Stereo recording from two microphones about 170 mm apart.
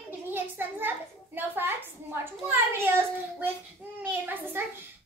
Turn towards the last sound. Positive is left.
turn(degrees=-10)  # may be behind; listen again after turning